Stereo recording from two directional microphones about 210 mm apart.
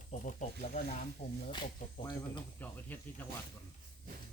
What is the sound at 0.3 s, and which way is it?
Speech, 35° left (ahead or behind).